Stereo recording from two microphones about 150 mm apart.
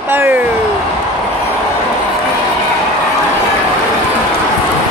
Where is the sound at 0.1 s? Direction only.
15° right (ahead or behind).